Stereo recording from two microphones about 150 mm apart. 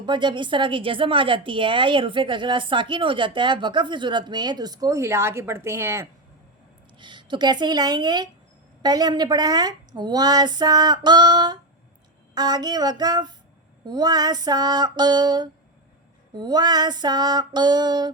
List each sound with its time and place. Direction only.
0.0 s a woman's voice: 30° right (ahead or behind)
7.0 s a woman's voice: 30° right (ahead or behind)